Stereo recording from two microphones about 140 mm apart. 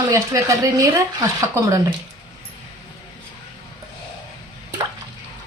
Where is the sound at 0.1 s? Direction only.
25° right (ahead or behind).